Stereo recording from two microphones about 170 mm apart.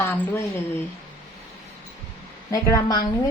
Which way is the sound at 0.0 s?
15° left (ahead or behind).